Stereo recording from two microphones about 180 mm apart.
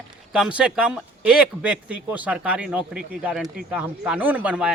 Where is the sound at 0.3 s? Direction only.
5° right (ahead or behind).